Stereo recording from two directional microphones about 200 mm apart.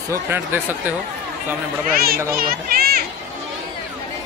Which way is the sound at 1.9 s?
50° right (ahead or behind).